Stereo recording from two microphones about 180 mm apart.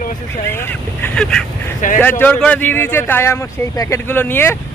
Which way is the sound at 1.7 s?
45° left (ahead or behind).